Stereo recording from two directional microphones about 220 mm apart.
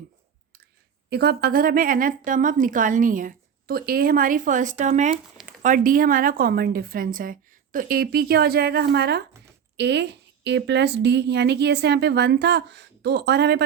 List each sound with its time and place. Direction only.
1.1 s a woman's voice: 45° right (ahead or behind)